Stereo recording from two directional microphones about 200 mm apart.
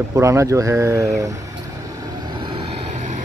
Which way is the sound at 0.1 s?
15° right (ahead or behind).